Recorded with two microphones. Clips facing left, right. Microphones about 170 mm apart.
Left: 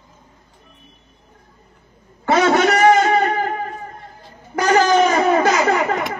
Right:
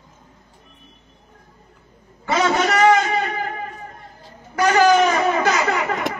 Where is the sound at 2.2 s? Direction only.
50° left (ahead or behind).